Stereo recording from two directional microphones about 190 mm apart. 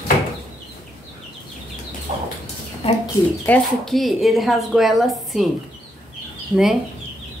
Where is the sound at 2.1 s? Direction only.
35° right (ahead or behind).